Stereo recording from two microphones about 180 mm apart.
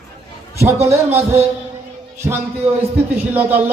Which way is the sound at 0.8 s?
15° right (ahead or behind).